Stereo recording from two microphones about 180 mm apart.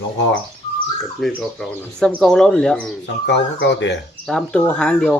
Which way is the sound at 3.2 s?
75° left (ahead or behind).